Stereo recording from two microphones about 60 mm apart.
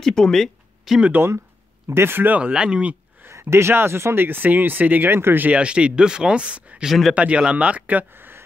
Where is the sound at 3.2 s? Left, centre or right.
Right.